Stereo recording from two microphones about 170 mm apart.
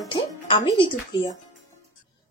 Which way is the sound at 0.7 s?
20° left (ahead or behind).